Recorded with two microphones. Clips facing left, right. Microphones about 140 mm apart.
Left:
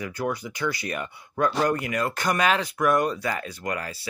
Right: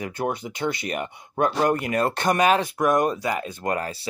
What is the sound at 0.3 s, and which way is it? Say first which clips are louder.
Speech: right 2 dB; 25° right (ahead or behind).